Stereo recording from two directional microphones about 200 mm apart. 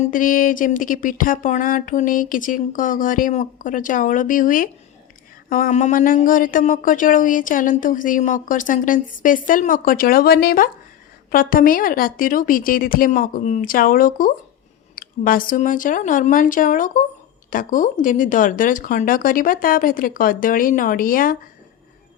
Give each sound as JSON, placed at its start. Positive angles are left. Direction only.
{"t": 0.1, "sound": "speech", "side_deg": 45}